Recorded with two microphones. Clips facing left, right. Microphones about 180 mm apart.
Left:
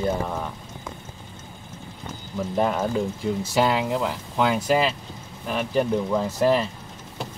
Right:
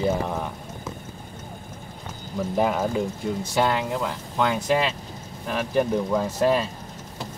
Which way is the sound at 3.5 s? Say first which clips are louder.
Left 1 dB; 5° left (ahead or behind).